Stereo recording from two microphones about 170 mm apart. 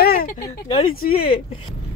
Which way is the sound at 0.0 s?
60° left (ahead or behind).